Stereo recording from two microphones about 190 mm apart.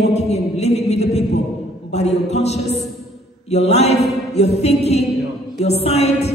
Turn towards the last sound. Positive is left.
turn(degrees=35)  # may be behind; listen again after turning